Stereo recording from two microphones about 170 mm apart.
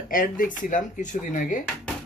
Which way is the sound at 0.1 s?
55° left (ahead or behind).